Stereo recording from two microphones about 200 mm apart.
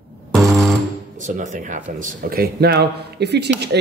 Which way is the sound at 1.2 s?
40° right (ahead or behind).